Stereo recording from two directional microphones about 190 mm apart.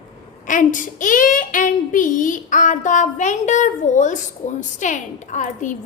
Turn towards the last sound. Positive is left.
turn(degrees=40)  # may be behind; listen again after turning